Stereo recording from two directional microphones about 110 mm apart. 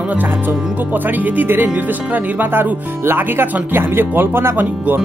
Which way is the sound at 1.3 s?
15° right (ahead or behind).